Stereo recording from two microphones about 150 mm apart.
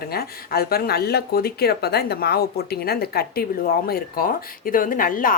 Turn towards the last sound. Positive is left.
turn(degrees=70)  # may be behind; listen again after turning